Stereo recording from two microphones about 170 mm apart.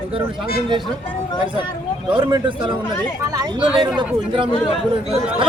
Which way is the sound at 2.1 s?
30° right (ahead or behind).